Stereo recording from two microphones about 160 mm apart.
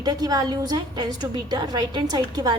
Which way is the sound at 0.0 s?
25° right (ahead or behind).